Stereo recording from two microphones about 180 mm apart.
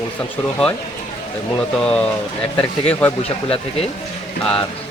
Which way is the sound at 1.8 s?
5° left (ahead or behind).